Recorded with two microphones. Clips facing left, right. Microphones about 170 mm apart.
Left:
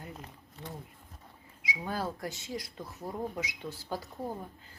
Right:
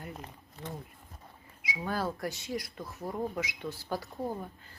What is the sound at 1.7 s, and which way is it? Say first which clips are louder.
Speech: right 2 dB; 20° left (ahead or behind).